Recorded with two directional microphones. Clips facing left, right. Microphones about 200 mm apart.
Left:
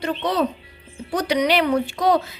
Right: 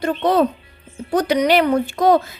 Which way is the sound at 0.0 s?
50° right (ahead or behind).